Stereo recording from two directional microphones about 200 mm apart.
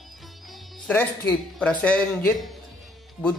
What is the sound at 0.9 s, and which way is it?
Speech, 10° left (ahead or behind).